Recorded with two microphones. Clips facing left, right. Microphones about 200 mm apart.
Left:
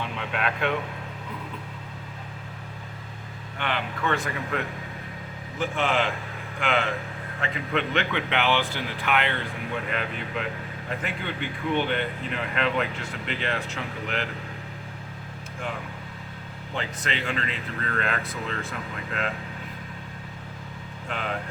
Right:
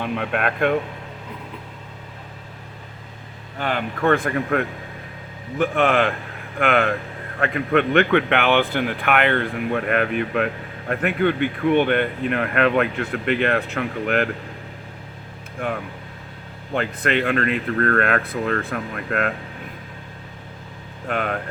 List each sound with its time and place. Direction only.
0.0 s speech: 55° right (ahead or behind)
3.6 s speech: 45° right (ahead or behind)
15.6 s speech: 60° right (ahead or behind)
21.1 s speech: 55° right (ahead or behind)